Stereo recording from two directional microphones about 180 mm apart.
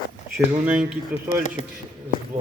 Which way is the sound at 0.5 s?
5° right (ahead or behind).